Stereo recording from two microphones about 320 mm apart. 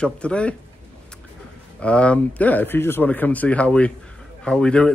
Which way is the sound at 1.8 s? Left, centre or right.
Centre.